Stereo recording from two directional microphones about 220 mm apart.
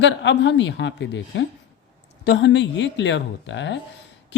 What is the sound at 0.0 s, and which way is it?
A woman's voice, 55° left (ahead or behind).